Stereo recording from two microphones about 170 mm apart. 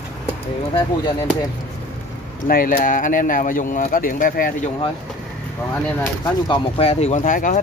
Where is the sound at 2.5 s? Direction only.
55° left (ahead or behind).